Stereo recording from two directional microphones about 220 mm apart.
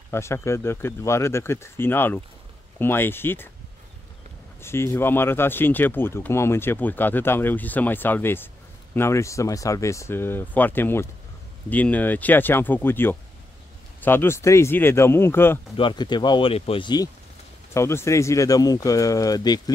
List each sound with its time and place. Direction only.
0.1 s speech: 10° left (ahead or behind)
4.6 s speech: 10° left (ahead or behind)
15.7 s speech: 20° left (ahead or behind)